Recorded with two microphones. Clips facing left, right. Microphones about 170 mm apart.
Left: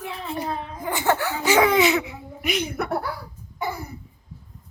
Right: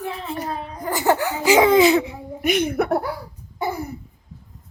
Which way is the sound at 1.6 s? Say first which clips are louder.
Right 5 dB; 30° right (ahead or behind).